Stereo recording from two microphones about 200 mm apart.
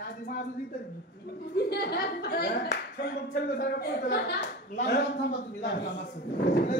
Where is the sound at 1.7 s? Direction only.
55° left (ahead or behind).